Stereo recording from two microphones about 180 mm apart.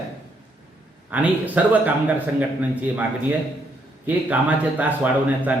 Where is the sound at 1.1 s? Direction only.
10° right (ahead or behind).